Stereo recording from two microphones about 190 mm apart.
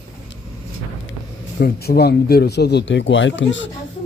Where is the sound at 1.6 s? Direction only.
55° left (ahead or behind).